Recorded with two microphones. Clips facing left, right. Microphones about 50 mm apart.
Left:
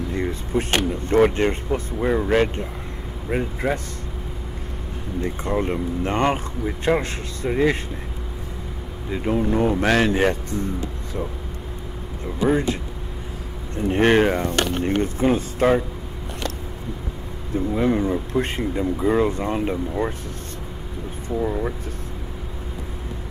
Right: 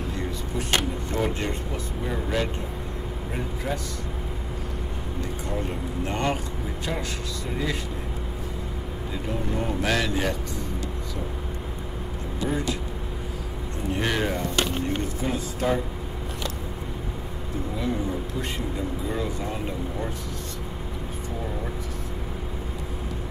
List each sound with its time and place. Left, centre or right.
0.1 s speech: left
5.2 s speech: left
9.1 s speech: left
12.4 s speech: left
13.8 s speech: left
17.7 s speech: left